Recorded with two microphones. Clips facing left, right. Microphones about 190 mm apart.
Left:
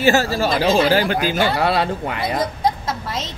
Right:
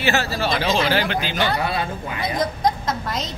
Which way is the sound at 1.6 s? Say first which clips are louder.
Left 6 dB; 75° left (ahead or behind).